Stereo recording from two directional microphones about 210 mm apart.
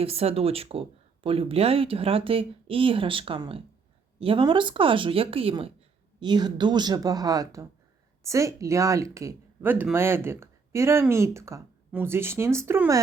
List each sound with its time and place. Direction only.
0.0 s speech: 30° right (ahead or behind); by 13.0 s 10° right (ahead or behind)